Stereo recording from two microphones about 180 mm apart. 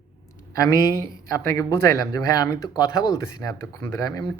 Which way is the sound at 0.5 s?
15° left (ahead or behind).